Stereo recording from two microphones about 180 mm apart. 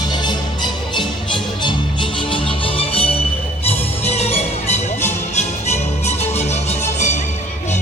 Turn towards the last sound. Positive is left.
turn(degrees=40)  # may be behind; listen again after turning